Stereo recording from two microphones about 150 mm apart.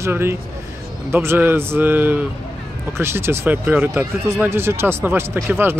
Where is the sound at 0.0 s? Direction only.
15° right (ahead or behind).